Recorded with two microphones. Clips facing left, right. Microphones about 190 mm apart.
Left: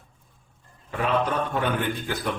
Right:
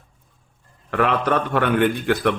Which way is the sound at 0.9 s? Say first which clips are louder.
Right 5 dB; 75° right (ahead or behind).